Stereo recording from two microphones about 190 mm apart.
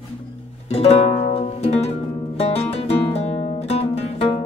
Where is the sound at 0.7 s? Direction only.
30° left (ahead or behind).